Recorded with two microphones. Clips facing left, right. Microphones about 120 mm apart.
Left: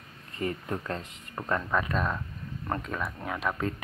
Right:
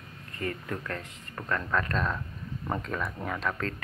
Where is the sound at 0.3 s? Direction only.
20° left (ahead or behind).